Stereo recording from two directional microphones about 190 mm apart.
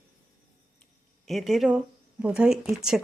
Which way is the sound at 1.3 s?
Centre (ahead or behind).